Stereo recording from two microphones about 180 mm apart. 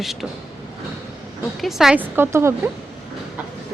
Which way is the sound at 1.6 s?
5° right (ahead or behind).